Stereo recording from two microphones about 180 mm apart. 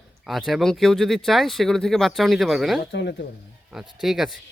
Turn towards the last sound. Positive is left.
turn(degrees=0)  # may be behind; listen again after turning